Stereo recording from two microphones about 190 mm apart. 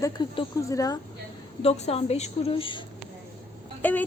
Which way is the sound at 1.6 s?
30° left (ahead or behind).